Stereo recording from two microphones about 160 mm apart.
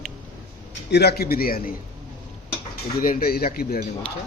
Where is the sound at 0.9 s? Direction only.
90° left; by 1.7 s 65° left (ahead or behind).